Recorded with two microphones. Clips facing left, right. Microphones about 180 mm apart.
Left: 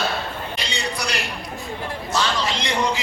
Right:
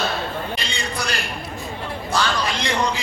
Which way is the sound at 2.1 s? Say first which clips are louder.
Right 1 dB; 25° left (ahead or behind).